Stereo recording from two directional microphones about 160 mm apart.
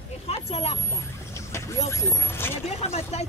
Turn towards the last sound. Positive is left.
turn(degrees=40)  # may be behind; listen again after turning